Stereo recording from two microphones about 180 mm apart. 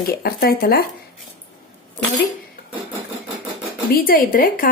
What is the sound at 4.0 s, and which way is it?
Speech, 55° left (ahead or behind).